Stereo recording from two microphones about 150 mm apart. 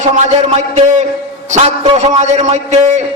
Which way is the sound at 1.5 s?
50° right (ahead or behind).